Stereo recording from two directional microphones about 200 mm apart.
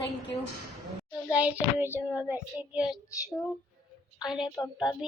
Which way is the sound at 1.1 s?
5° right (ahead or behind).